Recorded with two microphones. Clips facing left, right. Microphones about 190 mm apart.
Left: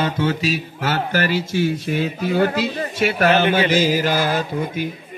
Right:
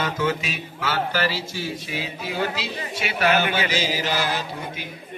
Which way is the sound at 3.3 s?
30° left (ahead or behind).